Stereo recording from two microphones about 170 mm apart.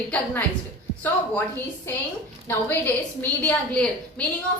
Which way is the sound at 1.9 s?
15° left (ahead or behind).